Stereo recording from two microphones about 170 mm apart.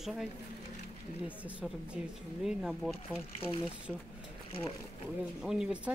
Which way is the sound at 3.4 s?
30° left (ahead or behind).